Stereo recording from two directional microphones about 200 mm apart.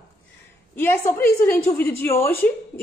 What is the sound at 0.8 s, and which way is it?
A woman's voice, 10° left (ahead or behind).